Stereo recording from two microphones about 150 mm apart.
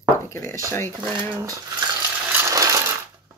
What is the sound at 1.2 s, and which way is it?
Speech, 25° right (ahead or behind).